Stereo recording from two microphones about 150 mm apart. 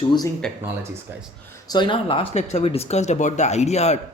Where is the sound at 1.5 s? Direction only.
30° left (ahead or behind).